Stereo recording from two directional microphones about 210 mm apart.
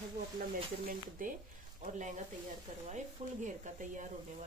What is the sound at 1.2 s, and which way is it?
Speech, 40° right (ahead or behind).